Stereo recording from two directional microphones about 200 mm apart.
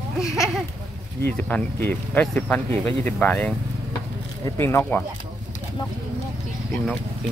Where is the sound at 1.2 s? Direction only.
10° left (ahead or behind).